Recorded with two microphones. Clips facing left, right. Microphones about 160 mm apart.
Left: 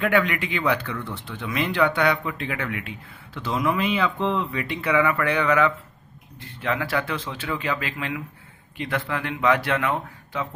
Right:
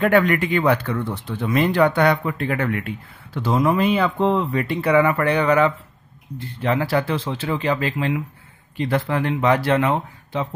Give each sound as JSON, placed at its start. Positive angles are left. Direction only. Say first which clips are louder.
{"t": 0.0, "sound": "speech", "louder": "right 5 dB", "side_deg": -45}